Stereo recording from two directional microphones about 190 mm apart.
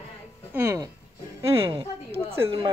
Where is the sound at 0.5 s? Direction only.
15° right (ahead or behind).